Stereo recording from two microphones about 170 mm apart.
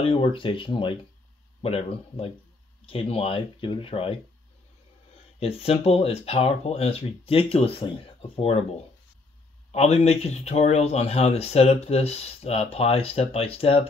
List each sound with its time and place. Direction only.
0.0 s speech: 30° left (ahead or behind)
5.4 s speech: 35° left (ahead or behind)
9.7 s speech: 40° left (ahead or behind)